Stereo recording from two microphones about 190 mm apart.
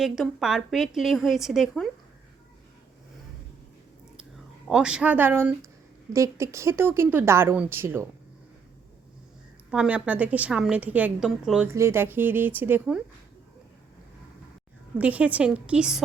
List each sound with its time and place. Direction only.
0.0 s a woman's voice: centre (ahead or behind)
4.7 s a woman's voice: 5° right (ahead or behind)
9.7 s a woman's voice: 5° right (ahead or behind)
14.9 s a woman's voice: 5° right (ahead or behind)